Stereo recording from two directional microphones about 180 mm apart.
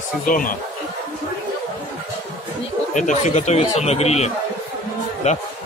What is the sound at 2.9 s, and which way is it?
Speech, 40° left (ahead or behind).